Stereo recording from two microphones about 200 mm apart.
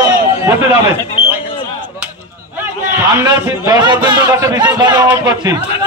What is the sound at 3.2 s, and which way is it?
A man's voice, 15° right (ahead or behind).